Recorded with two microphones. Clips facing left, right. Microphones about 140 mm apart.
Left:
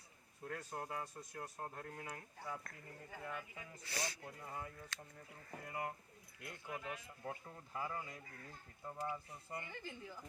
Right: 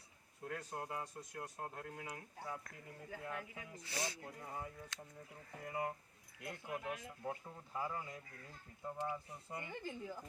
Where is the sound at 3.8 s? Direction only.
20° right (ahead or behind).